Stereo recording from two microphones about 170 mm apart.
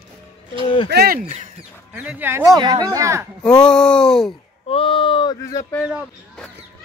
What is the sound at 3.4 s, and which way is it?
Speech, 5° left (ahead or behind).